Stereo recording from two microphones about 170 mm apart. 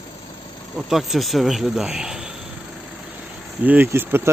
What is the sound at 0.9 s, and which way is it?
Speech, centre (ahead or behind).